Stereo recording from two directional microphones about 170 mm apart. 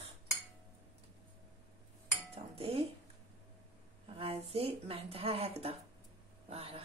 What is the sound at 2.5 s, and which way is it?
Speech, 35° right (ahead or behind).